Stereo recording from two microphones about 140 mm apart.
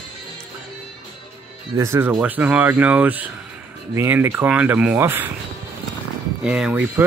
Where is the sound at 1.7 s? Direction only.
20° right (ahead or behind).